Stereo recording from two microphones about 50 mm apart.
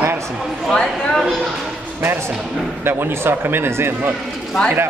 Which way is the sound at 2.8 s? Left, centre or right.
Right.